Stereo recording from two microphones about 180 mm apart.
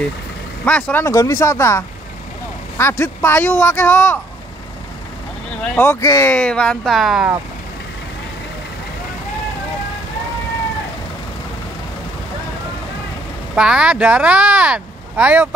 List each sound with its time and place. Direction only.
0.7 s speech: 5° left (ahead or behind)
5.6 s speech: 10° left (ahead or behind)
13.6 s speech: 5° right (ahead or behind)